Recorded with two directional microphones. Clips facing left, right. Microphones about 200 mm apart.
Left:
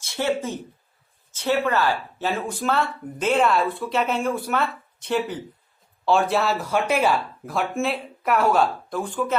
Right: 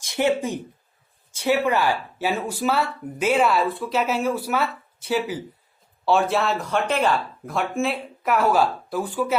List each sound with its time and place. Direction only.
0.0 s speech: 15° right (ahead or behind)